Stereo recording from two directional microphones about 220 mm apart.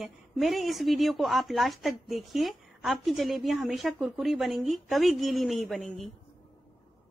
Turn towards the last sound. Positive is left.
turn(degrees=0)  # may be behind; listen again after turning